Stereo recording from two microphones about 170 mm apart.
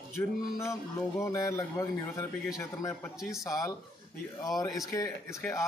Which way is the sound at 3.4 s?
20° left (ahead or behind).